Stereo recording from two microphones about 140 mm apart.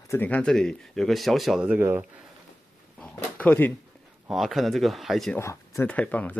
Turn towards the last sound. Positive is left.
turn(degrees=10)  # may be behind; listen again after turning